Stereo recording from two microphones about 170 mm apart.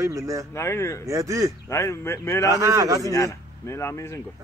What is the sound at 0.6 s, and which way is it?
Speech, 15° left (ahead or behind).